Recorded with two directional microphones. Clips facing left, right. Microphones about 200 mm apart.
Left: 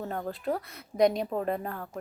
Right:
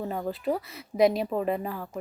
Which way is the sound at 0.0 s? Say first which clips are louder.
Right 3 dB; 5° right (ahead or behind).